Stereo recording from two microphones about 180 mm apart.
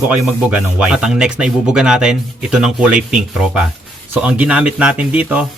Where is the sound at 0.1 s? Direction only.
5° right (ahead or behind).